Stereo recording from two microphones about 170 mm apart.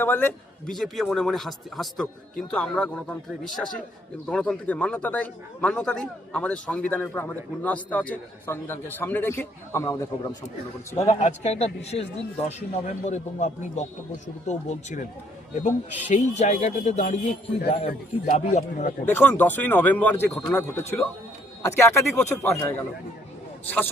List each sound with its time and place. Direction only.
0.0 s a man's voice: 10° left (ahead or behind)
11.0 s a man's voice: 40° left (ahead or behind)
19.0 s a man's voice: 10° left (ahead or behind)
23.6 s a man's voice: 10° left (ahead or behind)